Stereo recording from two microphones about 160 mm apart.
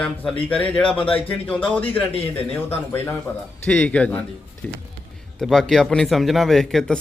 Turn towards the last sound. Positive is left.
turn(degrees=0)  # may be behind; listen again after turning